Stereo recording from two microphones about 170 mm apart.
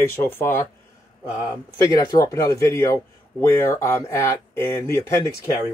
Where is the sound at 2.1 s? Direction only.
20° left (ahead or behind).